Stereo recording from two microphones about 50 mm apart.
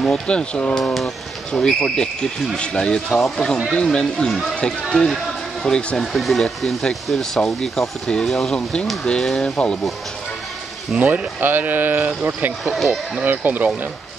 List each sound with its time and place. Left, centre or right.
0.1 s speech: centre
11.0 s speech: right
12.7 s speech: centre
13.2 s speech: right